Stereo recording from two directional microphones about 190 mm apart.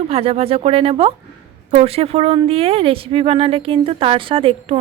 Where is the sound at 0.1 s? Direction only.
30° right (ahead or behind).